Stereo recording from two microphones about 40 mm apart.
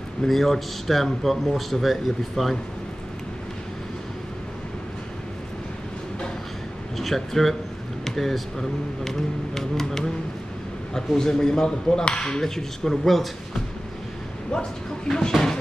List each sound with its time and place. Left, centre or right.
0.2 s a man's voice: centre
7.0 s speech: centre
11.1 s speech: centre
14.5 s speech: centre